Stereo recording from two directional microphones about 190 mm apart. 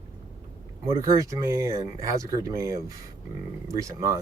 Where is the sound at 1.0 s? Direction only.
15° right (ahead or behind).